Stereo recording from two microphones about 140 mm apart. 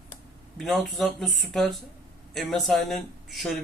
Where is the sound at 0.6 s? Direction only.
Centre (ahead or behind).